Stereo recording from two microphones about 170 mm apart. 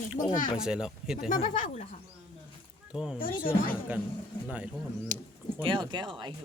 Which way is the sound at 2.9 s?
5° right (ahead or behind).